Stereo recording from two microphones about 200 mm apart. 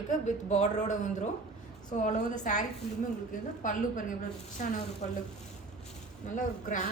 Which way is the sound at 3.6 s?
40° left (ahead or behind).